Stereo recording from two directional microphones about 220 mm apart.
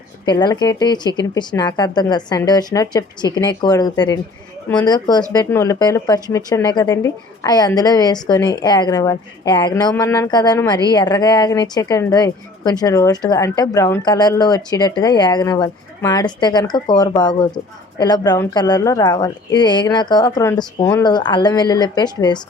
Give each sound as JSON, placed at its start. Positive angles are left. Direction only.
{"t": 0.3, "sound": "a woman's voice", "side_deg": 20}